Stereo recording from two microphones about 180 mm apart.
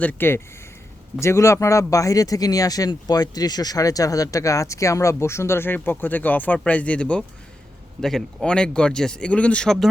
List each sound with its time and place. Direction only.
0.0 s speech: 10° left (ahead or behind)